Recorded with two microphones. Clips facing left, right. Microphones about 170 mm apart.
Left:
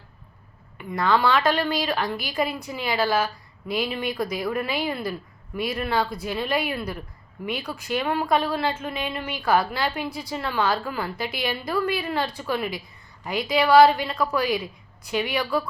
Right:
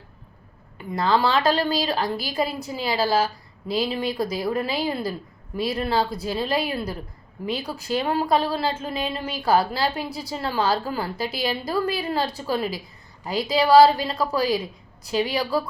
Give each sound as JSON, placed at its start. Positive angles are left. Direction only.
{"t": 0.8, "sound": "a woman's voice", "side_deg": -30}